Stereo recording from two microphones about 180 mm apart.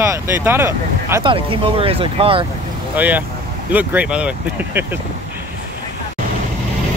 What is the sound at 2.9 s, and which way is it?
Speech, 10° right (ahead or behind).